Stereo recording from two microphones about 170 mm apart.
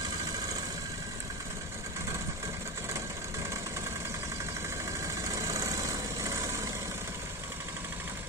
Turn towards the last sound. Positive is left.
turn(degrees=-20)  # may be behind; listen again after turning